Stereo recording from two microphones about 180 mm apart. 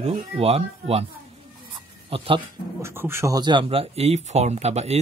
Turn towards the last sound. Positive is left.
turn(degrees=-35)  # may be behind; listen again after turning